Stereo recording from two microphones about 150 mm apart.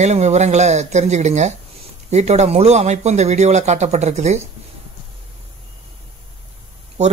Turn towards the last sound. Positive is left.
turn(degrees=-50)  # may be behind; listen again after turning